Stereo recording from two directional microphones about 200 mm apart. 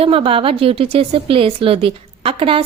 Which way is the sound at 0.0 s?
30° right (ahead or behind).